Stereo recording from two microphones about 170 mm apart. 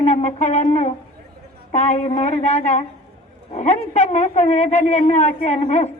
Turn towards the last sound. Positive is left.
turn(degrees=40)  # may be behind; listen again after turning